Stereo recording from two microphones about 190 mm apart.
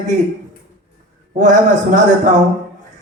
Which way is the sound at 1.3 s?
40° right (ahead or behind).